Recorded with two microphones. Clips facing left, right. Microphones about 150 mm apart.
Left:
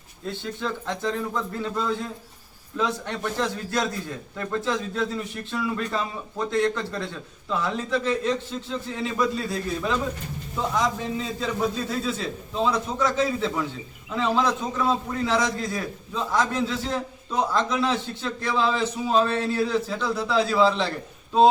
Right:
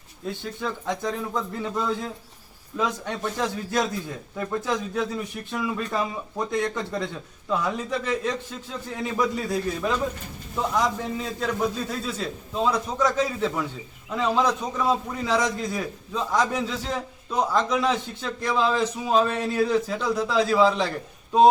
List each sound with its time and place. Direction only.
0.3 s a man's voice: 10° right (ahead or behind)